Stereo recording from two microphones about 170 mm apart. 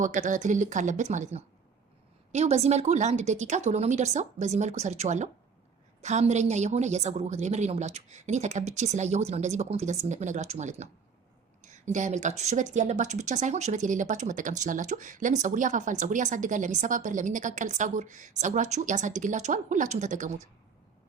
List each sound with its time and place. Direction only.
0.0 s a woman's voice: 45° right (ahead or behind)